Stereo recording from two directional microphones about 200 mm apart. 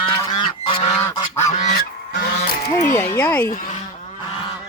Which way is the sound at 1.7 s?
50° left (ahead or behind).